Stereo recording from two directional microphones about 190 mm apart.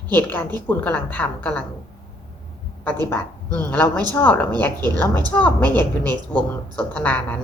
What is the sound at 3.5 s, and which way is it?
A woman's voice, 10° left (ahead or behind).